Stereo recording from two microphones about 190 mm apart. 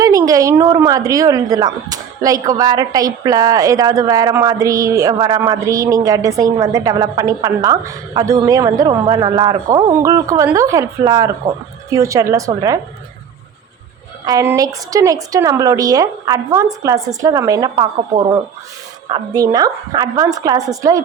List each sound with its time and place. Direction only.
0.0 s a woman's voice: 20° right (ahead or behind)
14.3 s a woman's voice: 20° right (ahead or behind)